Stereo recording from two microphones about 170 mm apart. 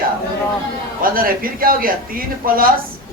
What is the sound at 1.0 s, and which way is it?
A man's voice, 55° right (ahead or behind).